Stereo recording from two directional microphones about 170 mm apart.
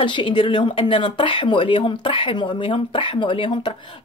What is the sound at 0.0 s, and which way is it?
Speech, 30° left (ahead or behind).